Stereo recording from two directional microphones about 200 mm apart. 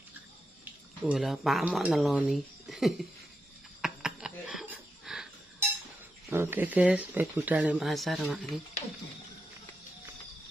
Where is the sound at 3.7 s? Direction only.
5° right (ahead or behind).